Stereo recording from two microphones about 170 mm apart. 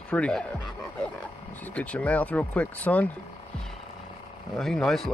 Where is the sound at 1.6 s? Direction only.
10° left (ahead or behind).